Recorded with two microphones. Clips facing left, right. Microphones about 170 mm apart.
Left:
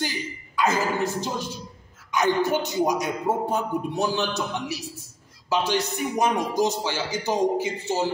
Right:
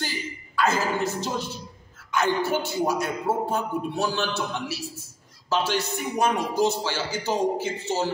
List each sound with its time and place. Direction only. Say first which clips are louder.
0.6 s a man's voice: left 1 dB; 15° left (ahead or behind)